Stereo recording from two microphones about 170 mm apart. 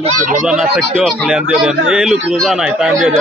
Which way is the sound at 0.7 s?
Centre (ahead or behind).